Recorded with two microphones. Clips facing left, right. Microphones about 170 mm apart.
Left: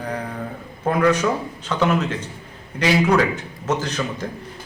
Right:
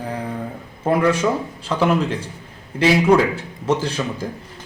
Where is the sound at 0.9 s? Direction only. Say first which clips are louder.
Right 1 dB; 30° right (ahead or behind).